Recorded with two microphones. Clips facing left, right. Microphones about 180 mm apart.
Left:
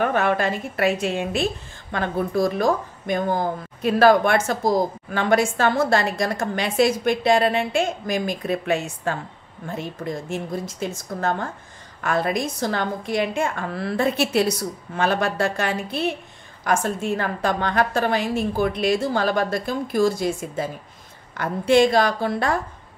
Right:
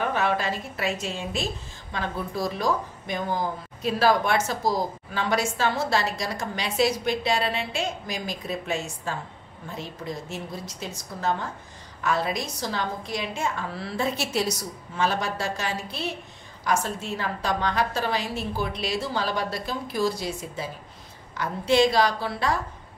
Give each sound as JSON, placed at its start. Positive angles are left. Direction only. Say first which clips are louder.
{"t": 0.0, "sound": "a woman's voice", "louder": "left 5 dB", "side_deg": 55}